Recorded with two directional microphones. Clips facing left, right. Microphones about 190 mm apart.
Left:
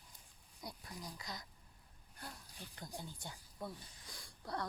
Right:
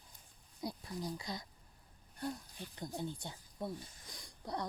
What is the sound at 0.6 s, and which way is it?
Speech, 25° right (ahead or behind).